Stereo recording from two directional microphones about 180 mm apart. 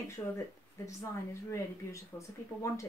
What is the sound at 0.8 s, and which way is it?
Speech, 15° left (ahead or behind).